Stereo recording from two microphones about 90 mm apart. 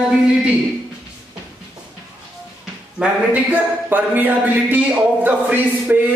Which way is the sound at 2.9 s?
20° right (ahead or behind).